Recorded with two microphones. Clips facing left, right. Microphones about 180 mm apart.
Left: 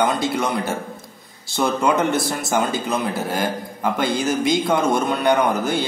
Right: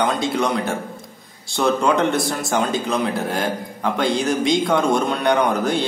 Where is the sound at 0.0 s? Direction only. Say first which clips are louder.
Even; 5° left (ahead or behind).